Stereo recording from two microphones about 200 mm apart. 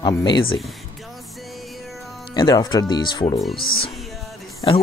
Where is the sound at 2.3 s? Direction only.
20° left (ahead or behind).